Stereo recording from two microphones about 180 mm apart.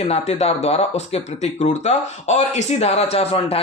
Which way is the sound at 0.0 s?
35° left (ahead or behind).